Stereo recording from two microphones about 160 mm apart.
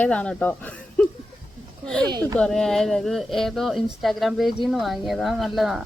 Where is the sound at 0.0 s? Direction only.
10° left (ahead or behind).